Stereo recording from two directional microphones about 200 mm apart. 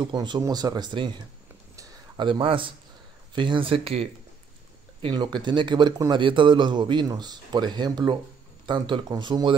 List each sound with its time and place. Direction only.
0.0 s speech: 20° right (ahead or behind)
1.8 s a sound: 25° right (ahead or behind)
3.3 s speech: 25° right (ahead or behind)